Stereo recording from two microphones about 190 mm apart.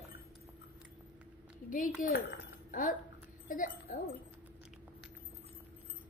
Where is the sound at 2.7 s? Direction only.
45° left (ahead or behind).